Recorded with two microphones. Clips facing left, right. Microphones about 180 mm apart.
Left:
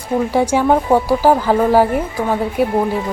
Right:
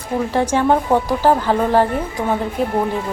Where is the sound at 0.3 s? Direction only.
10° left (ahead or behind).